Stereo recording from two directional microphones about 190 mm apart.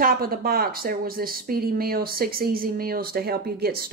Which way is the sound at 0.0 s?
50° right (ahead or behind).